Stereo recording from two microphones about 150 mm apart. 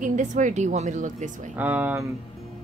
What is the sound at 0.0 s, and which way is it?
Speech, 55° right (ahead or behind).